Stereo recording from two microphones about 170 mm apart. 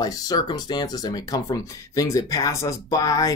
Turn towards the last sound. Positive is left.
turn(degrees=20)  # may be behind; listen again after turning